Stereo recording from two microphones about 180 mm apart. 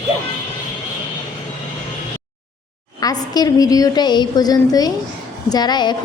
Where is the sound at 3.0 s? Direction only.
20° left (ahead or behind).